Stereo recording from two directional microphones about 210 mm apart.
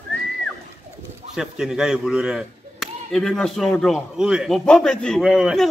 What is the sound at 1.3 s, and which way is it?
Speech, 5° right (ahead or behind).